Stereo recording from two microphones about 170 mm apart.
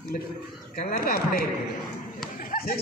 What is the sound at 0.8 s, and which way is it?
Speech, 55° left (ahead or behind).